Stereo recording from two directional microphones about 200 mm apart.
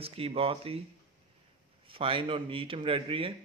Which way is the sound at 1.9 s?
25° right (ahead or behind).